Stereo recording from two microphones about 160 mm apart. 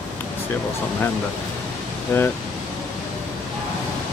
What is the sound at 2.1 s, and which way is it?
Speech, 15° left (ahead or behind).